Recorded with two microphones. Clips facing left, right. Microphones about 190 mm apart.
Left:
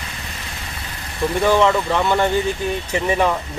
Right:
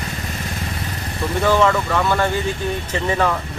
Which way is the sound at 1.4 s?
15° left (ahead or behind).